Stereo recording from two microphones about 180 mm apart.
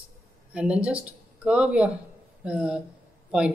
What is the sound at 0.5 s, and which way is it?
Speech, 5° right (ahead or behind).